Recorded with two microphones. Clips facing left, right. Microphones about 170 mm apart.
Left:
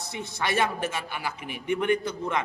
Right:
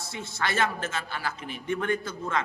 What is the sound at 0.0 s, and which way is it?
Speech, 15° left (ahead or behind).